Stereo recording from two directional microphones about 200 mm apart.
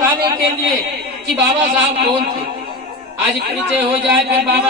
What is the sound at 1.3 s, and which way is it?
Speech, 55° right (ahead or behind).